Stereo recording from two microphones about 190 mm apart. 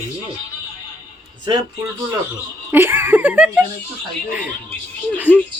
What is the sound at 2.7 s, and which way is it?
Speech, 10° right (ahead or behind).